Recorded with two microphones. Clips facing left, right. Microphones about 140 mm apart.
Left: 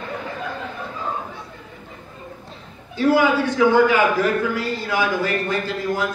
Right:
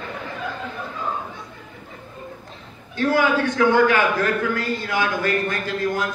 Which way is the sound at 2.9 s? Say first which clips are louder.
Left 2 dB; 10° left (ahead or behind).